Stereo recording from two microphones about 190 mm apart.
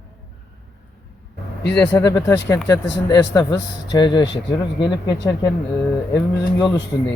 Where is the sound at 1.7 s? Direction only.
10° left (ahead or behind).